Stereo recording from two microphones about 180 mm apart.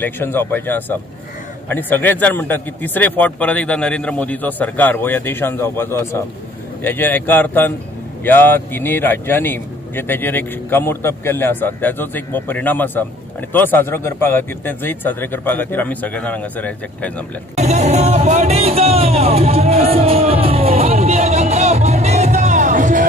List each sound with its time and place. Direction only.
0.0 s speech: 10° left (ahead or behind)
17.6 s music: 40° right (ahead or behind)